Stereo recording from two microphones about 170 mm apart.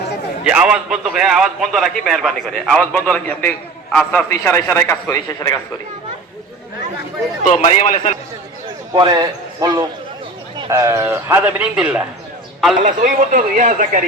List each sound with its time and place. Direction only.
0.4 s a man's voice: 5° right (ahead or behind); by 5.5 s 20° left (ahead or behind)
7.4 s a man's voice: 45° left (ahead or behind)
9.0 s a man's voice: 25° right (ahead or behind); by 12.0 s 5° right (ahead or behind)
12.8 s speech: 50° right (ahead or behind)